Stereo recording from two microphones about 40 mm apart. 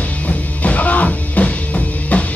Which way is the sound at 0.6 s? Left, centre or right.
Left.